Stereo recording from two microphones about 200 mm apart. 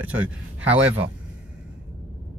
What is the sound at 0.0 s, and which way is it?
Speech, 10° right (ahead or behind).